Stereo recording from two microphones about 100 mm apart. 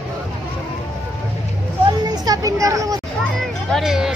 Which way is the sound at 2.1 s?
35° right (ahead or behind).